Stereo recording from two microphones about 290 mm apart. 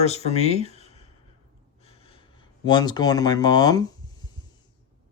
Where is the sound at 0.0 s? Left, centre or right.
Left.